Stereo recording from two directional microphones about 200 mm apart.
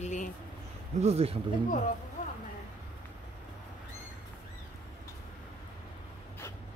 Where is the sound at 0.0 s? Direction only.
35° left (ahead or behind).